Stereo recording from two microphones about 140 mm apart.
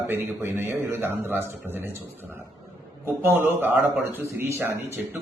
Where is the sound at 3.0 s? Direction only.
15° right (ahead or behind).